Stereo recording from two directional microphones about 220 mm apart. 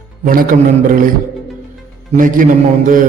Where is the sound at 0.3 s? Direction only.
40° right (ahead or behind).